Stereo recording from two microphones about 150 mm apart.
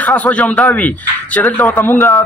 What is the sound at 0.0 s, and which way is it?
Speech, 10° left (ahead or behind).